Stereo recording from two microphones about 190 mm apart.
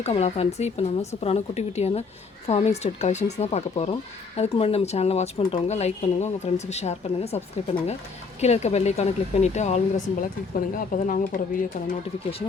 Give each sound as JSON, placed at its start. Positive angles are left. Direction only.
{"t": 0.0, "sound": "speech", "side_deg": 35}